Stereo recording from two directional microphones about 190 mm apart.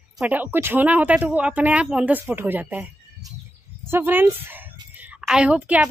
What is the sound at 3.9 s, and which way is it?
A woman's voice, 10° right (ahead or behind).